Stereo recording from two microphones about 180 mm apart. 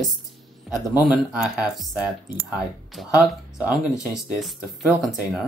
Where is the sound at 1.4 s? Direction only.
5° right (ahead or behind).